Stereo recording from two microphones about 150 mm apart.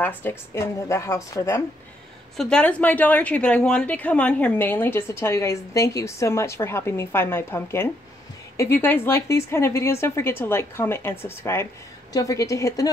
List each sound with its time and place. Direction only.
0.0 s speech: 15° left (ahead or behind)
2.3 s a woman's voice: 5° left (ahead or behind)